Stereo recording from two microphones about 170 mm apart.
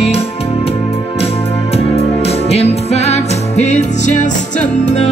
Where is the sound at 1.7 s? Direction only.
35° left (ahead or behind).